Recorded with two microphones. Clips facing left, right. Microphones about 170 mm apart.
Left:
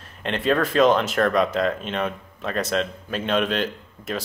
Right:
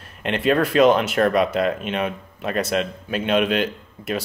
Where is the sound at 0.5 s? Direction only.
5° right (ahead or behind).